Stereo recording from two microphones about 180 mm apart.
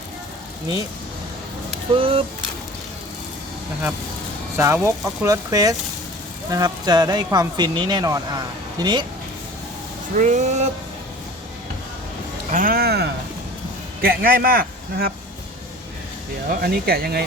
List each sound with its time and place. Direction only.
2.0 s speech: 30° right (ahead or behind)
4.5 s speech: 15° right (ahead or behind)
10.2 s speech: 40° right (ahead or behind)
12.5 s a man's voice: 50° right (ahead or behind)
16.5 s speech: 55° right (ahead or behind)